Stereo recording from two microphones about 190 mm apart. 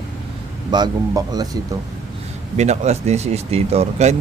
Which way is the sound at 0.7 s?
20° right (ahead or behind).